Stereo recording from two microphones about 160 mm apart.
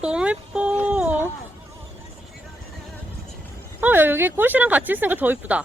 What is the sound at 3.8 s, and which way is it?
Speech, 15° right (ahead or behind).